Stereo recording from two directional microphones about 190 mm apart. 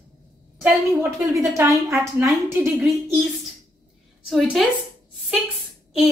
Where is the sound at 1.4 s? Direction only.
15° right (ahead or behind).